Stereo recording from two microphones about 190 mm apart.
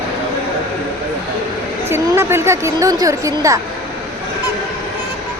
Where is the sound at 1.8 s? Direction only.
15° right (ahead or behind).